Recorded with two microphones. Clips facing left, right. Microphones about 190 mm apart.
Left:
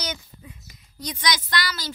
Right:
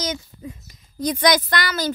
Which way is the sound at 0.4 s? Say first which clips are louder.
Right 10 dB; 40° right (ahead or behind).